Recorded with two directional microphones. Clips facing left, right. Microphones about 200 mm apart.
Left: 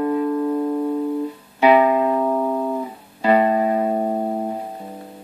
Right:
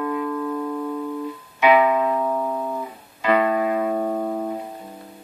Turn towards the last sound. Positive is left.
turn(degrees=30)  # may be behind; listen again after turning